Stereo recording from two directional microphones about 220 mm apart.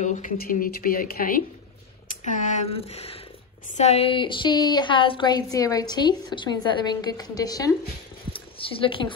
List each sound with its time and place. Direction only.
0.0 s a woman's voice: 35° left (ahead or behind); by 7.7 s 15° left (ahead or behind)
8.3 s zipper: 25° left (ahead or behind)